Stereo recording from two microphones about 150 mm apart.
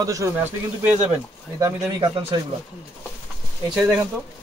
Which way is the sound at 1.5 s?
25° right (ahead or behind).